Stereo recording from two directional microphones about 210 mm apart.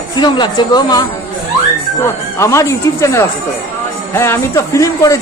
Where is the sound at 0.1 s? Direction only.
20° left (ahead or behind).